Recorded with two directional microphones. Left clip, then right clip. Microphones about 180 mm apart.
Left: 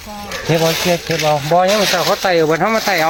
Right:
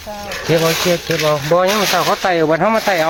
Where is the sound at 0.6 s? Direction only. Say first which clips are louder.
Even; 40° right (ahead or behind).